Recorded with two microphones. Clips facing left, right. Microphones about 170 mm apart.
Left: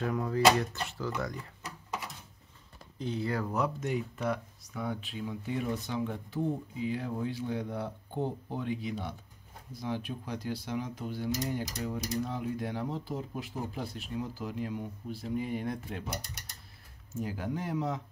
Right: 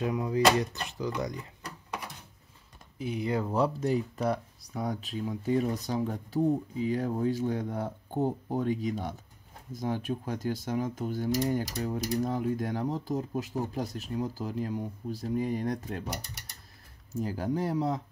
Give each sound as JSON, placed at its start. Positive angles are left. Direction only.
{"t": 0.0, "sound": "speech", "side_deg": -15}
{"t": 3.0, "sound": "speech", "side_deg": -15}
{"t": 17.1, "sound": "speech", "side_deg": -35}